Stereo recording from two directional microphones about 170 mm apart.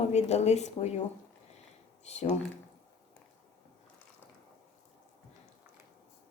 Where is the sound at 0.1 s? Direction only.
40° left (ahead or behind).